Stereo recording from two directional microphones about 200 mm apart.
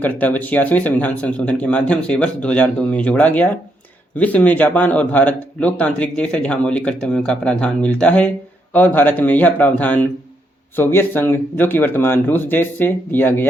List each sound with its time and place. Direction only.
0.0 s speech: 10° left (ahead or behind)